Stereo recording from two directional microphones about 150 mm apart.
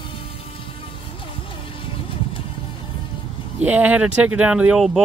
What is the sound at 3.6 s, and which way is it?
Speech, 10° right (ahead or behind).